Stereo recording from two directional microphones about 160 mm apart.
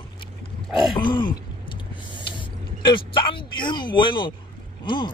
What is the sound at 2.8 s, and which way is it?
Speech, 30° left (ahead or behind).